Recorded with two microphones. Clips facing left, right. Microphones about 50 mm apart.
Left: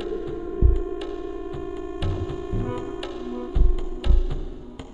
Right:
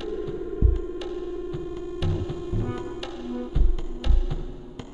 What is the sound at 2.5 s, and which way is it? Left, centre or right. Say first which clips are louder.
Music: left 2 dB; centre.